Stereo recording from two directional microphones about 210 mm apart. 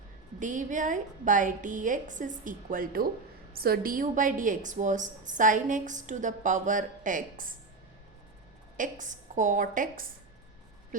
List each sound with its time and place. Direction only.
0.3 s a woman's voice: 40° right (ahead or behind)
8.8 s a woman's voice: 35° right (ahead or behind)